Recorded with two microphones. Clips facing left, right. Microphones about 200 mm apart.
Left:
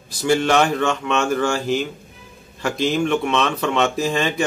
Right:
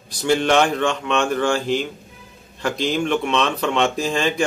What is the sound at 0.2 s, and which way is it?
Speech, 5° left (ahead or behind).